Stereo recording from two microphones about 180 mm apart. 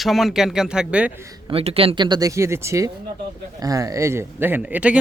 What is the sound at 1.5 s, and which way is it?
Speech, 35° right (ahead or behind).